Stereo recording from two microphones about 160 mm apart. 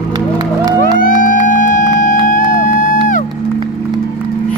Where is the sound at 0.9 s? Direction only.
55° left (ahead or behind).